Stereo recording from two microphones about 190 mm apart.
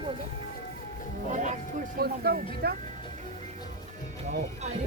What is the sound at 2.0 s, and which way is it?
Speech, 55° right (ahead or behind).